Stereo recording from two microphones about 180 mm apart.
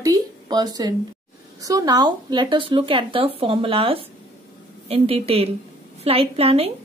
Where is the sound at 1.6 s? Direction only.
20° right (ahead or behind).